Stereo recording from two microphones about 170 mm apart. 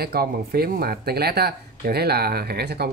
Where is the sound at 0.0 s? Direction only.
65° right (ahead or behind).